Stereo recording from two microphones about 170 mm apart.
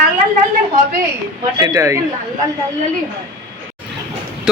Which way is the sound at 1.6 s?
20° right (ahead or behind).